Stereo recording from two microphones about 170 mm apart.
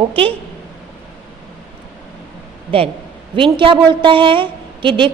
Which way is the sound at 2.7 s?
30° right (ahead or behind).